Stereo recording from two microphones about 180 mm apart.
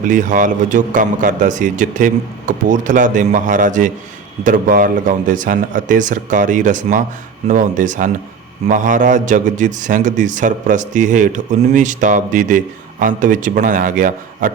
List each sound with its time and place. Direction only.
0.0 s a man's voice: 45° right (ahead or behind)